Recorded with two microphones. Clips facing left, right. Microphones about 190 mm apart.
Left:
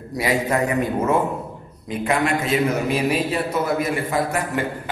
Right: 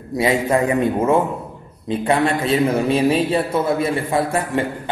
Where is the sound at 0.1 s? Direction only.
25° right (ahead or behind).